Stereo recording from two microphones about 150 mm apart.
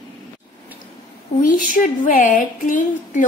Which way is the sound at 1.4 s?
60° left (ahead or behind).